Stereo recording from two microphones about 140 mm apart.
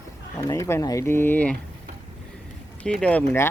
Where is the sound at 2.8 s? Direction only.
10° left (ahead or behind).